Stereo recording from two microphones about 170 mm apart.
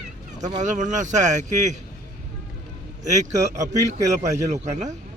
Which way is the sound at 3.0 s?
45° right (ahead or behind).